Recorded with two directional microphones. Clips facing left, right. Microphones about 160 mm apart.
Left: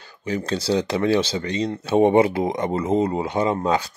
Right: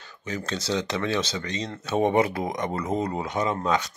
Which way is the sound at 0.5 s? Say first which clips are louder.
Left 5 dB; 30° left (ahead or behind).